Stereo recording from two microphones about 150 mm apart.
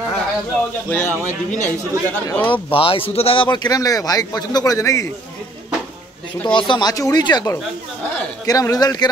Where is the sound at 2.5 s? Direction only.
35° left (ahead or behind); by 5.1 s 20° left (ahead or behind).